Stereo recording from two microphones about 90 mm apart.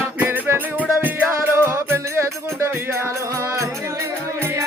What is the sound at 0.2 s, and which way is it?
Music, 25° right (ahead or behind).